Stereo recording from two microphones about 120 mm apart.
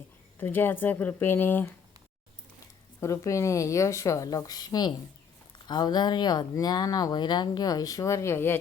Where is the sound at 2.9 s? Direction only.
25° left (ahead or behind).